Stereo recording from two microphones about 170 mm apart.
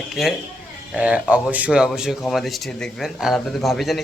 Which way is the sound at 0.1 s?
Centre (ahead or behind).